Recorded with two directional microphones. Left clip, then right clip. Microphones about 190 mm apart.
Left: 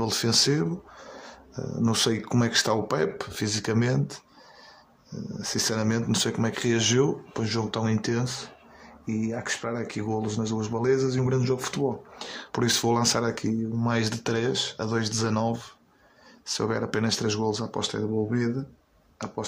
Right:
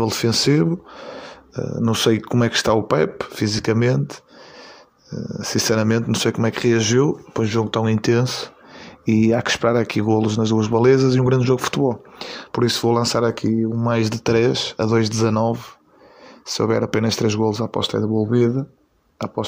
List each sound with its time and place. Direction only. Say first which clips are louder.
0.0 s speech: right 5 dB; 25° right (ahead or behind)